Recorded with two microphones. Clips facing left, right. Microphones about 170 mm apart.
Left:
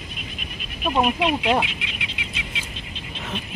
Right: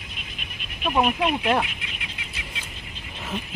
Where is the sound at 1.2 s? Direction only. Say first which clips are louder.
Left 1 dB; 20° left (ahead or behind).